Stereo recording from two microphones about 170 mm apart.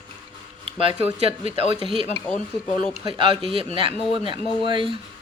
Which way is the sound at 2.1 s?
10° left (ahead or behind).